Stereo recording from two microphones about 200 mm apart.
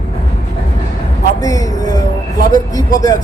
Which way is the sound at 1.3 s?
15° left (ahead or behind).